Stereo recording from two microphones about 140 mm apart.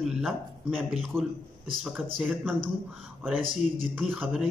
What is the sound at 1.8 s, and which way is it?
Speech, 10° right (ahead or behind).